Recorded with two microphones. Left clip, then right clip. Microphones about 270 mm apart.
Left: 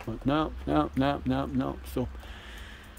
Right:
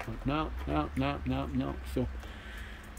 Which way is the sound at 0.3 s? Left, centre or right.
Left.